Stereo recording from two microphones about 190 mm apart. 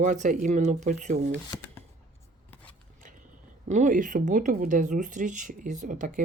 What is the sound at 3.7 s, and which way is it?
Speech, 40° right (ahead or behind).